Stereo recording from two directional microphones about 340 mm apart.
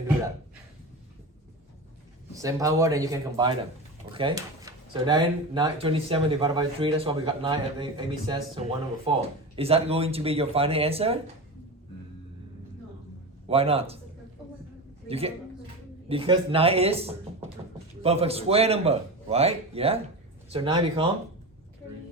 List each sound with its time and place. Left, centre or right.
2.3 s speech: centre
13.5 s speech: centre
15.0 s a man's voice: centre